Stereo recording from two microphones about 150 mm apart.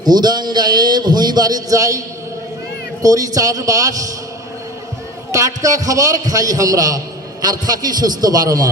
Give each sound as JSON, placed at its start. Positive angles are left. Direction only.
{"t": 0.0, "sound": "a man's voice", "side_deg": -25}
{"t": 5.3, "sound": "a man's voice", "side_deg": -20}